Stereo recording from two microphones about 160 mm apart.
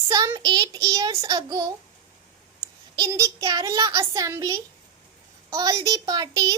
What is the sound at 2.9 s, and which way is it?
A child's voice, 20° right (ahead or behind).